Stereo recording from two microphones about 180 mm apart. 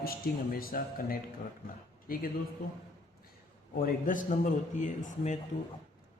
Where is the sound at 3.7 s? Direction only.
50° left (ahead or behind).